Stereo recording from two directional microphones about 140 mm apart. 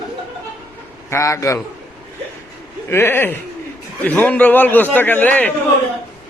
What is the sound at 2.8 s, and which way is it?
A man's voice, 15° left (ahead or behind).